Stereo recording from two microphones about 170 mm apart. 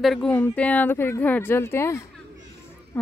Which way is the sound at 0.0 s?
5° left (ahead or behind).